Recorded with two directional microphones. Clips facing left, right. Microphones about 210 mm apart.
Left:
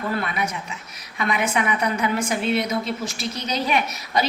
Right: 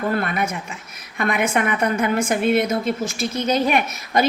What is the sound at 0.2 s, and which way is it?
A woman's voice, 50° right (ahead or behind).